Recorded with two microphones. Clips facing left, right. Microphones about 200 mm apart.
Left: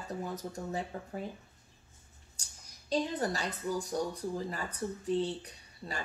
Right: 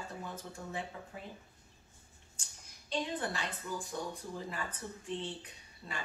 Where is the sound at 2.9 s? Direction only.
40° left (ahead or behind).